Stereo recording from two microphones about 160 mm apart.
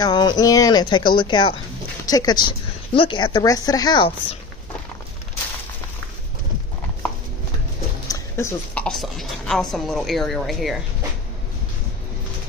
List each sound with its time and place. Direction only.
0.0 s a woman's voice: 25° left (ahead or behind)
8.1 s a sound: 15° left (ahead or behind)
8.8 s speech: centre (ahead or behind)